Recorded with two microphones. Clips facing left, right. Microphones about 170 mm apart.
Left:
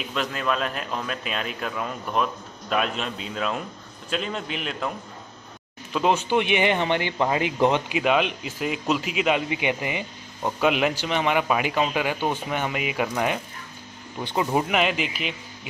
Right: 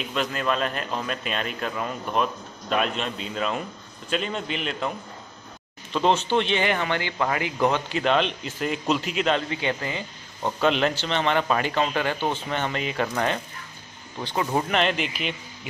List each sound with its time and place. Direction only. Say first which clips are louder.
0.0 s speech: right 1 dB; centre (ahead or behind)
5.9 s speech: even; 10° left (ahead or behind)
8.0 s a man's voice: right 2 dB; 5° left (ahead or behind)